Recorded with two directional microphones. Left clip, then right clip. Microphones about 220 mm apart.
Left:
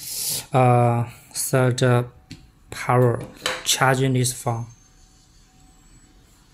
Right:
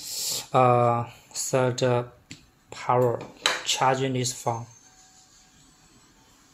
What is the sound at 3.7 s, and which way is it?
Speech, 20° left (ahead or behind).